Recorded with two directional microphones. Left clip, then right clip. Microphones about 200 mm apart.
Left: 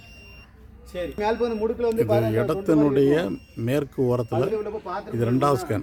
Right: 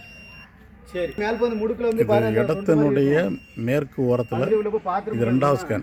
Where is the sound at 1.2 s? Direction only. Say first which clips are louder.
Even; 45° right (ahead or behind).